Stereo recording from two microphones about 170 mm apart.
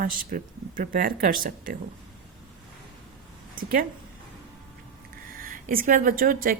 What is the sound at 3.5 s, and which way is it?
Speech, 55° right (ahead or behind).